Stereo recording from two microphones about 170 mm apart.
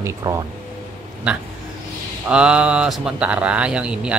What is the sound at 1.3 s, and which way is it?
Speech, 5° right (ahead or behind).